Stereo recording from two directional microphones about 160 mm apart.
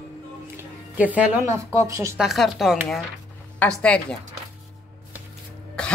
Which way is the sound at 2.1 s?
Centre (ahead or behind).